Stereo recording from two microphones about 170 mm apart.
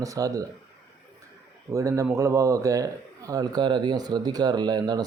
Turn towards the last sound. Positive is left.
turn(degrees=-25)  # may be behind; listen again after turning